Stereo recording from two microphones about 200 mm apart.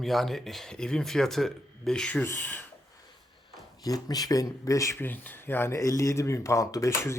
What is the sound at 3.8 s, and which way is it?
Speech, 20° left (ahead or behind).